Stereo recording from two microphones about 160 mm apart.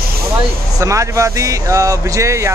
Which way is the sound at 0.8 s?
20° right (ahead or behind).